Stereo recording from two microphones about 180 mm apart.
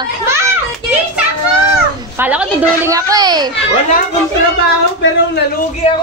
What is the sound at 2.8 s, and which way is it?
Speech, 20° right (ahead or behind).